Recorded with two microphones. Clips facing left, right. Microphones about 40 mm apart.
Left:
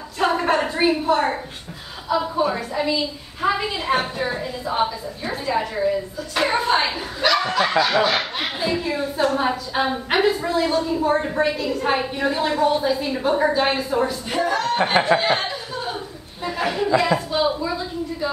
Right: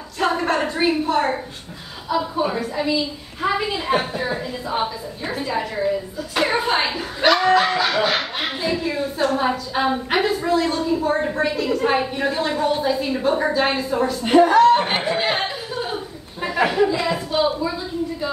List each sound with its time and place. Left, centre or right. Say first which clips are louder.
0.2 s a sound: left 1 dB; centre
2.0 s speech: left 1 dB; centre
7.2 s bow-wow: right 3 dB; centre
7.6 s speech: left 1 dB; centre
14.2 s speech: right 9 dB; right
15.2 s a sound: left 1 dB; centre
16.6 s speech: right 5 dB; centre
17.3 s a woman's voice: right 1 dB; centre